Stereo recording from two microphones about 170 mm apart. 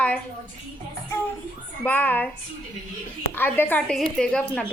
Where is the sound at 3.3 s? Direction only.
10° left (ahead or behind).